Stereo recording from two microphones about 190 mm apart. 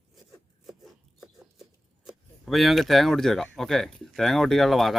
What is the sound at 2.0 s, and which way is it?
Speech, centre (ahead or behind).